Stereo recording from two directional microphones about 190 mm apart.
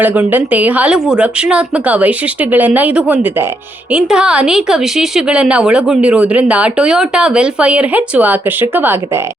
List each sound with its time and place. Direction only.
0.0 s a woman's voice: 10° right (ahead or behind)